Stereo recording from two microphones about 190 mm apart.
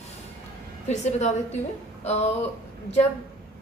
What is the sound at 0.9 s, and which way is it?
Speech, 35° left (ahead or behind).